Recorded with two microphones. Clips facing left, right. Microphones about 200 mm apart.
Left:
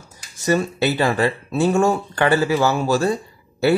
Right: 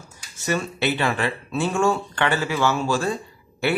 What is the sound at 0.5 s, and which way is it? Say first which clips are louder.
Speech: left 5 dB; 35° left (ahead or behind).